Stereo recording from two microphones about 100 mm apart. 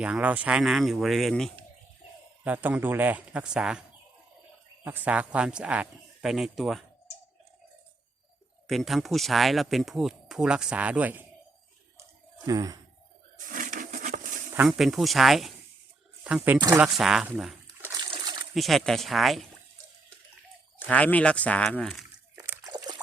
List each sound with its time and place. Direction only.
0.0 s speech: 15° right (ahead or behind); by 1.5 s centre (ahead or behind)
2.4 s a man's voice: 15° right (ahead or behind)
4.8 s a man's voice: 20° right (ahead or behind)
6.2 s speech: centre (ahead or behind)
8.6 s speech: centre (ahead or behind); by 11.3 s 15° right (ahead or behind)
12.5 s speech: 40° right (ahead or behind)
14.7 s a man's voice: centre (ahead or behind)
17.0 s speech: 5° right (ahead or behind)
18.0 s splash: 45° right (ahead or behind)
18.5 s speech: centre (ahead or behind)
20.8 s speech: 15° left (ahead or behind)
22.6 s pour: 40° right (ahead or behind)